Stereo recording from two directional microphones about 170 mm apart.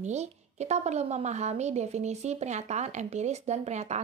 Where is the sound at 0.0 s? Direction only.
40° right (ahead or behind).